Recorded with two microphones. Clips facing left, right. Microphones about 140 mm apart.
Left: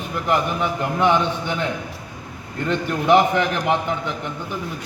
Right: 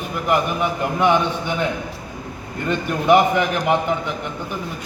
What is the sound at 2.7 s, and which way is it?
A man's voice, 10° right (ahead or behind).